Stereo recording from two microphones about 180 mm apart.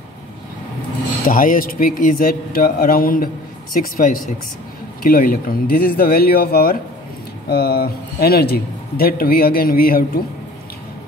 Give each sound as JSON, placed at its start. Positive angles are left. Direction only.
{"t": 1.2, "sound": "a man's voice", "side_deg": 50}